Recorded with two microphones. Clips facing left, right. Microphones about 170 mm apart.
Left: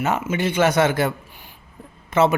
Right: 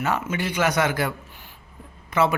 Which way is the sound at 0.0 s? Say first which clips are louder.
Left 3 dB; 25° left (ahead or behind).